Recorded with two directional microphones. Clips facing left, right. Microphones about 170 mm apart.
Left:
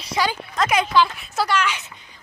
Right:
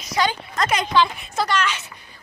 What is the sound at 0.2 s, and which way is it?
A woman's voice, 5° left (ahead or behind).